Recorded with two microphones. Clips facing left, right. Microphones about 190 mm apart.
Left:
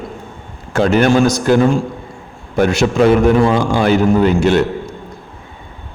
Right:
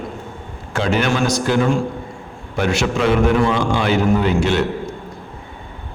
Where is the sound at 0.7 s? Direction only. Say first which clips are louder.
Left 7 dB; 45° left (ahead or behind).